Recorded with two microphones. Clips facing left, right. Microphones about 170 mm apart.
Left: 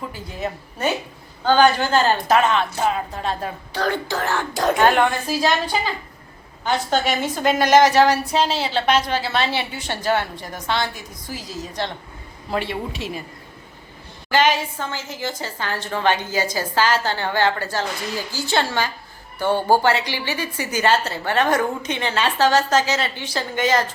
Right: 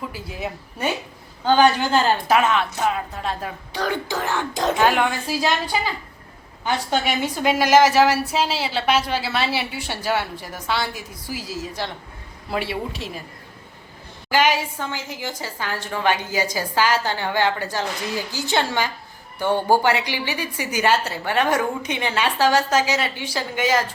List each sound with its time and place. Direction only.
0.1 s a woman's voice: 5° right (ahead or behind)
3.7 s a woman's voice: 15° right (ahead or behind)
14.3 s a woman's voice: 10° right (ahead or behind)
19.5 s speech: 15° left (ahead or behind)
19.8 s a woman's voice: 15° right (ahead or behind)